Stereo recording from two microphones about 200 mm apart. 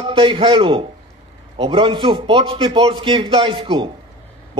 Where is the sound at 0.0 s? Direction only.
25° right (ahead or behind).